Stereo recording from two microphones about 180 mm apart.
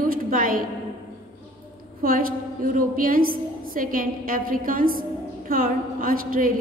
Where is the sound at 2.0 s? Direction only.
50° right (ahead or behind).